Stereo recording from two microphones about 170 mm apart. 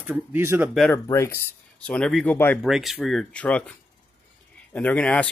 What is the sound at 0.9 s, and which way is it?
Speech, 15° left (ahead or behind).